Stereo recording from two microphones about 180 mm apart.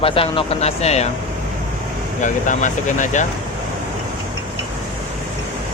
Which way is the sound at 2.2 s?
45° left (ahead or behind).